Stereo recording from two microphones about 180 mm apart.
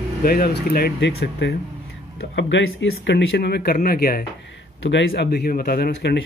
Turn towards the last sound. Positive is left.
turn(degrees=65)  # may be behind; listen again after turning